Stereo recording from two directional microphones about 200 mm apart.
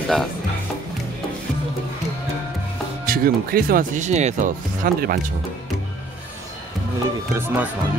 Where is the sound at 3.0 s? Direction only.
45° right (ahead or behind).